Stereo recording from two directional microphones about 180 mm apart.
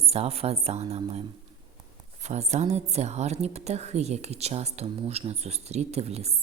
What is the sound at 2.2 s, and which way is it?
A woman's voice, 40° right (ahead or behind).